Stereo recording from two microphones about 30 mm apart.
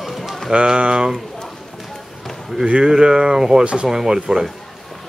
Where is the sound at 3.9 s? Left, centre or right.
Centre.